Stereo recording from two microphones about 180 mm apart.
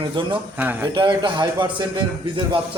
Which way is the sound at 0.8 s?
25° right (ahead or behind).